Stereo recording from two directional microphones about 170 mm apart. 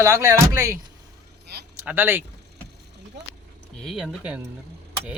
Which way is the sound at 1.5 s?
70° right (ahead or behind).